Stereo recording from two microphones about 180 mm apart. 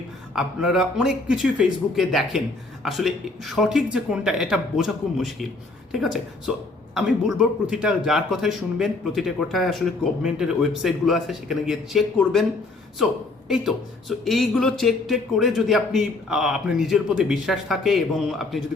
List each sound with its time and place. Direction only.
0.3 s speech: 5° right (ahead or behind)